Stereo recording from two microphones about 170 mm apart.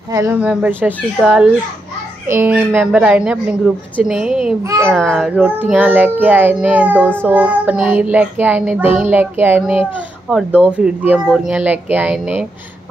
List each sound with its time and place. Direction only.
0.1 s child singing: 20° right (ahead or behind)
0.4 s child singing: 5° right (ahead or behind)
4.0 s speech: 5° right (ahead or behind)
4.8 s child singing: centre (ahead or behind)
10.3 s speech: 5° right (ahead or behind)